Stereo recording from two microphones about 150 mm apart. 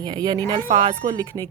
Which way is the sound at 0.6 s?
45° right (ahead or behind).